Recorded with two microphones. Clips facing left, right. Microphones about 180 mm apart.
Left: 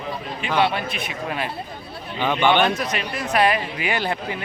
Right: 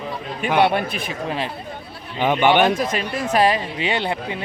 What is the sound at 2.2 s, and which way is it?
A man's voice, 15° right (ahead or behind).